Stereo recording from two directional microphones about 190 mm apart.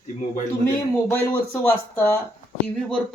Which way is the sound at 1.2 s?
10° left (ahead or behind).